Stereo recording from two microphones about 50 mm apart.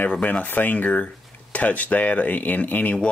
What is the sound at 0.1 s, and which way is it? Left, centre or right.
Speech, left.